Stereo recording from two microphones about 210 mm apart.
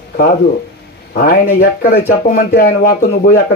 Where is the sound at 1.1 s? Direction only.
45° left (ahead or behind).